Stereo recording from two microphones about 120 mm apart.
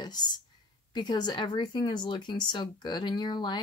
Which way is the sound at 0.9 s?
40° left (ahead or behind).